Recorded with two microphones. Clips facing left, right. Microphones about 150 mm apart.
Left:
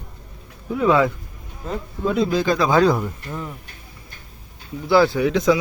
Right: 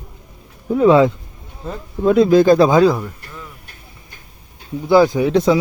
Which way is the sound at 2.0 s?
60° right (ahead or behind).